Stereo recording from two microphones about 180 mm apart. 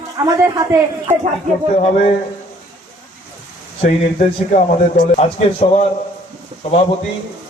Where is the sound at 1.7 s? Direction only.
35° left (ahead or behind).